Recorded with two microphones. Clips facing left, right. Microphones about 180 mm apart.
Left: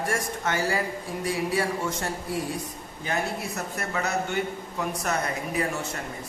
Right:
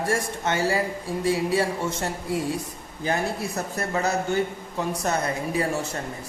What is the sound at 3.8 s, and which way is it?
A woman's voice, 35° right (ahead or behind).